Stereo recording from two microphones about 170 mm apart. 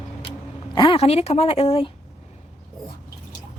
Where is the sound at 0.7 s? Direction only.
30° left (ahead or behind).